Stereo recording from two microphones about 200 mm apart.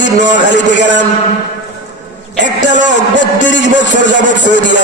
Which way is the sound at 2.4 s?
65° left (ahead or behind).